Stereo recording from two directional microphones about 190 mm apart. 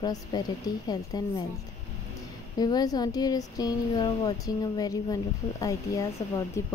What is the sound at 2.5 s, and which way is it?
Speech, 20° left (ahead or behind).